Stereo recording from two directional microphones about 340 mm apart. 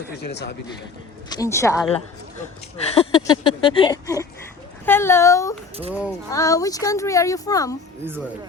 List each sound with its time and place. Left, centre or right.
0.2 s speech: left
1.3 s speech: centre
8.0 s speech: centre